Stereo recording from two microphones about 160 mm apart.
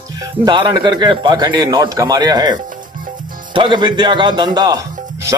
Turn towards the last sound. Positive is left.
turn(degrees=-20)  # may be behind; listen again after turning